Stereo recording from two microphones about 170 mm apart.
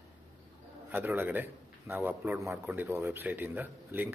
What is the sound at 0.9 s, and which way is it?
A man's voice, 10° right (ahead or behind).